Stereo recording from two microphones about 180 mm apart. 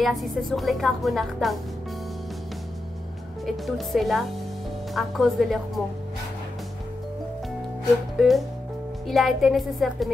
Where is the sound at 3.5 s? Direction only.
Centre (ahead or behind).